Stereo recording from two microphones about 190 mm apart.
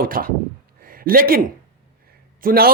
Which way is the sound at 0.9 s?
50° right (ahead or behind).